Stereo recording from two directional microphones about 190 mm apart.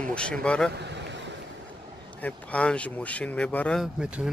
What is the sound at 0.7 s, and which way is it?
Vehicle, 65° right (ahead or behind).